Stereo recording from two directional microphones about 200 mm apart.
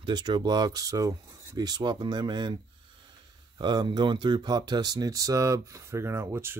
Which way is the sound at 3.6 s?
20° right (ahead or behind).